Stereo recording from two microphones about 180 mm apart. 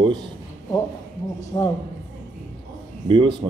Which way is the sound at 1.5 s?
20° left (ahead or behind).